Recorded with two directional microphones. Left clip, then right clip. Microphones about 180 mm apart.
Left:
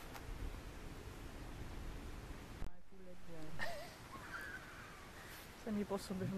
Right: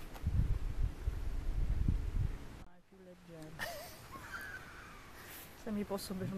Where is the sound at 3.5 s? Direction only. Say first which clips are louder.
Right 2 dB; 15° right (ahead or behind).